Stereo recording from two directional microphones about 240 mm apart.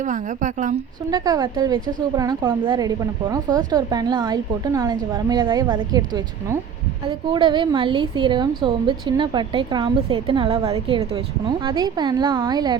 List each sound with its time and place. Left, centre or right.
0.0 s a woman's voice: right
1.1 s a woman's voice: centre
7.3 s a woman's voice: centre